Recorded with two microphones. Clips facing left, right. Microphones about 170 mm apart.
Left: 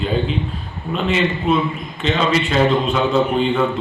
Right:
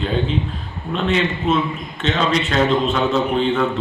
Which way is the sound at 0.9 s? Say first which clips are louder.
Left 1 dB; 5° left (ahead or behind).